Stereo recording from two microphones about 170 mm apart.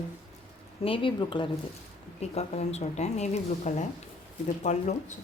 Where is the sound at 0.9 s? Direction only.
30° left (ahead or behind).